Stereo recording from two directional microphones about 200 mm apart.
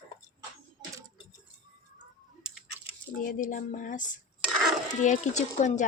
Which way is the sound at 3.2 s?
40° left (ahead or behind).